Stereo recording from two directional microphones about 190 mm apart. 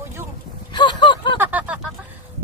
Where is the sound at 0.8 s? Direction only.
25° left (ahead or behind).